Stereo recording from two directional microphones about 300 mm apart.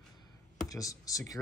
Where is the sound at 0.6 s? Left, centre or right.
Centre.